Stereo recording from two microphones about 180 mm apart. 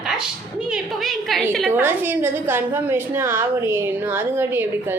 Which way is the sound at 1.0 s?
Centre (ahead or behind).